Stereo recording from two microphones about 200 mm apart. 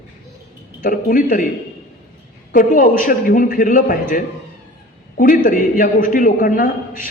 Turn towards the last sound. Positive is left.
turn(degrees=45)  # may be behind; listen again after turning